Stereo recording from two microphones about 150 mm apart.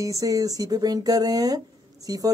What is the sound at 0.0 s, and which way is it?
A woman's voice, 20° right (ahead or behind).